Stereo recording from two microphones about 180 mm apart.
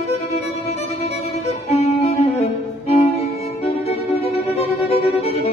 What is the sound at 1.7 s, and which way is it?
Music, 35° left (ahead or behind).